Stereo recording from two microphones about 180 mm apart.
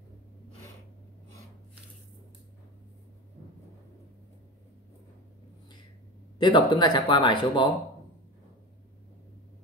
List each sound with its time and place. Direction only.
6.3 s speech: 25° left (ahead or behind)